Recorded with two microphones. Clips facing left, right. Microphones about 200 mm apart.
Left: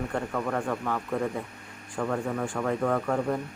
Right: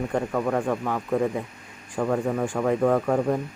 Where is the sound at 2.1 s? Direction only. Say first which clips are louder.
Right 5 dB; 15° right (ahead or behind).